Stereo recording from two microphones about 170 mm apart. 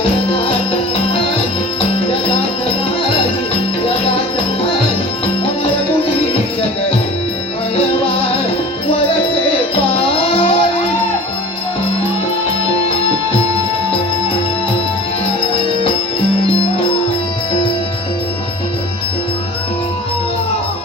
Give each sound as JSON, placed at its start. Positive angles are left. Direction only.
{"t": 10.2, "sound": "music", "side_deg": 35}